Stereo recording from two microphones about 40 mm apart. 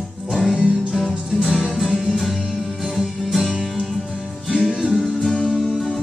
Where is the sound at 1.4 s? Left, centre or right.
Centre.